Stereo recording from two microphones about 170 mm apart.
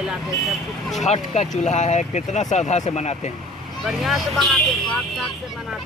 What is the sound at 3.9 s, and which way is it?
Speech, centre (ahead or behind).